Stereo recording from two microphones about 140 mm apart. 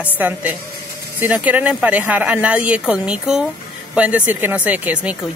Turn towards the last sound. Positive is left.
turn(degrees=-10)  # may be behind; listen again after turning